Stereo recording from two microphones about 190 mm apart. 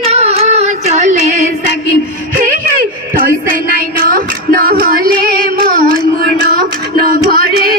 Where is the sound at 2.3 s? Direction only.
45° right (ahead or behind).